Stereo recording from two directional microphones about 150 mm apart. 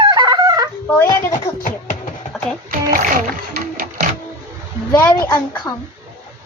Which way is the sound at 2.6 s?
70° right (ahead or behind).